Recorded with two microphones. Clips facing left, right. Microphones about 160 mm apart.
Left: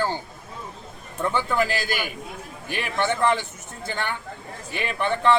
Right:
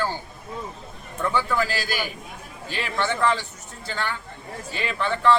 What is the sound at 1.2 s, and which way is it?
A man's voice, 20° left (ahead or behind).